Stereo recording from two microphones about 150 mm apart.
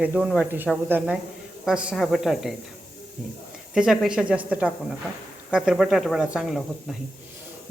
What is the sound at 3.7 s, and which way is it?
Speech, 5° right (ahead or behind).